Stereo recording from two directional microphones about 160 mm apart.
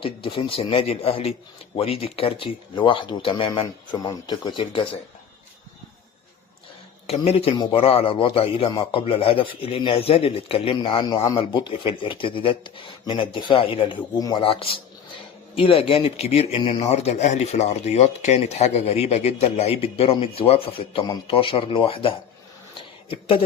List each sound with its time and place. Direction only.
0.0 s a man's voice: 35° left (ahead or behind)
7.1 s a man's voice: 35° left (ahead or behind)